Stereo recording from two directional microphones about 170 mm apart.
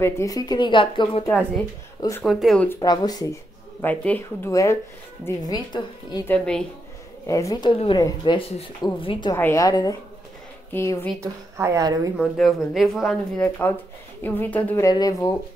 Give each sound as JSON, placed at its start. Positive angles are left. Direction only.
{"t": 0.0, "sound": "a woman's voice", "side_deg": 20}
{"t": 2.0, "sound": "speech", "side_deg": 20}
{"t": 2.2, "sound": "speech", "side_deg": 0}
{"t": 2.8, "sound": "a woman's voice", "side_deg": 20}
{"t": 3.8, "sound": "a woman's voice", "side_deg": 10}
{"t": 6.2, "sound": "speech", "side_deg": 5}
{"t": 7.2, "sound": "a woman's voice", "side_deg": 20}
{"t": 9.3, "sound": "a woman's voice", "side_deg": 15}
{"t": 11.1, "sound": "a woman's voice", "side_deg": -15}
{"t": 12.2, "sound": "speech", "side_deg": 0}
{"t": 14.9, "sound": "a woman's voice", "side_deg": 20}